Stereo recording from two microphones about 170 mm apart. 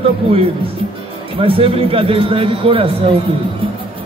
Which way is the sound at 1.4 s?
35° right (ahead or behind).